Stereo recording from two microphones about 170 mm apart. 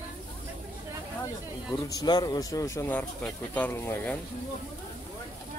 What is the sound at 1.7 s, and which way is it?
Speech, 20° left (ahead or behind).